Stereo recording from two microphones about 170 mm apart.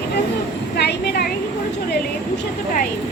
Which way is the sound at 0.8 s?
70° left (ahead or behind).